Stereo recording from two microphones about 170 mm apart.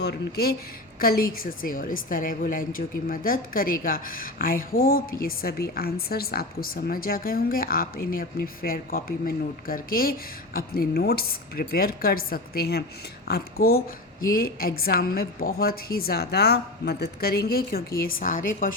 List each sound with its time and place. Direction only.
0.0 s speech: 70° left (ahead or behind)
0.9 s speech: 60° left (ahead or behind)